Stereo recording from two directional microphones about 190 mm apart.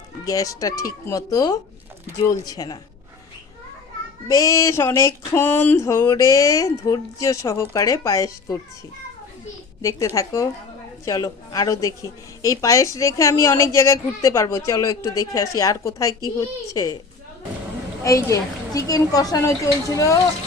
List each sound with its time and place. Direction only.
0.3 s speech: 20° left (ahead or behind)
4.3 s a woman's voice: 15° left (ahead or behind)
9.8 s a woman's voice: 15° left (ahead or behind)
18.0 s a woman's voice: 15° left (ahead or behind)